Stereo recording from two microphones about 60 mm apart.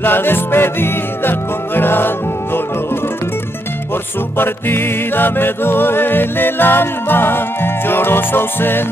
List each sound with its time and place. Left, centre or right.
0.0 s music: left
4.4 s music: left